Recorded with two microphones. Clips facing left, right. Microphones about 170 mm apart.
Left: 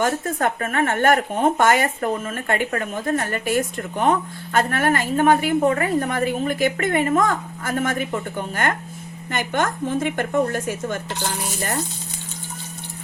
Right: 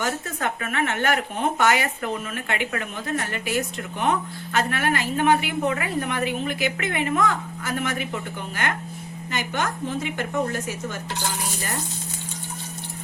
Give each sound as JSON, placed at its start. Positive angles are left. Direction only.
{"t": 0.0, "sound": "a woman's voice", "side_deg": 50}